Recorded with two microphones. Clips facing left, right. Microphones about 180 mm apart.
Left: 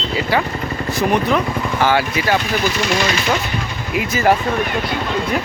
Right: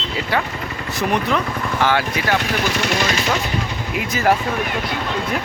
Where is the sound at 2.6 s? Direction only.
65° right (ahead or behind).